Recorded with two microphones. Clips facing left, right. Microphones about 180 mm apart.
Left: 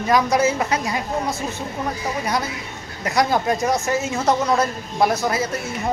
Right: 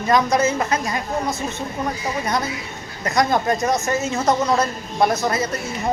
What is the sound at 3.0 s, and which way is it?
Speech, 10° left (ahead or behind).